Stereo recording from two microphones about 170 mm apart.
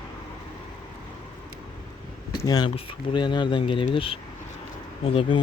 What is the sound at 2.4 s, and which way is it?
Speech, 25° left (ahead or behind).